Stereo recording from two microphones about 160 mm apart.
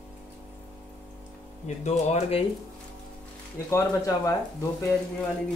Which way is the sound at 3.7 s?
20° left (ahead or behind).